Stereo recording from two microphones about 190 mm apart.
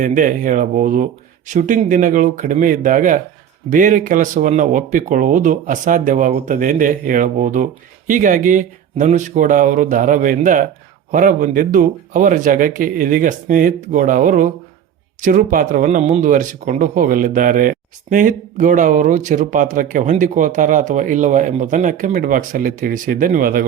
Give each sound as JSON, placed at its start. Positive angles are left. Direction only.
{"t": 0.0, "sound": "speech", "side_deg": -45}